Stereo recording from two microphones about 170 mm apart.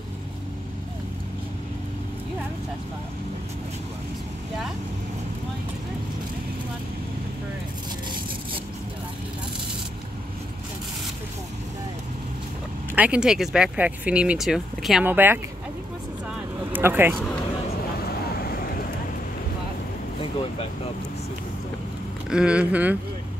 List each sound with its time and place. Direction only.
12.9 s speech: 10° right (ahead or behind)
16.7 s speech: 10° right (ahead or behind)
18.0 s vehicle: 65° left (ahead or behind)
22.3 s speech: 5° right (ahead or behind)